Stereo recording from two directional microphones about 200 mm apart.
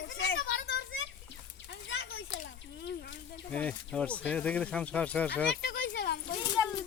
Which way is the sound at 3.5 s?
5° left (ahead or behind).